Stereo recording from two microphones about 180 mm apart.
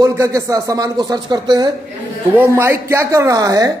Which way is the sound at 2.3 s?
10° right (ahead or behind).